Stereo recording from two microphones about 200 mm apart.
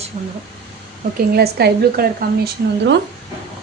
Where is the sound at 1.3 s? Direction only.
50° right (ahead or behind).